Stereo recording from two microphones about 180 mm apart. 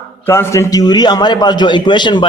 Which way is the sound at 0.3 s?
15° left (ahead or behind).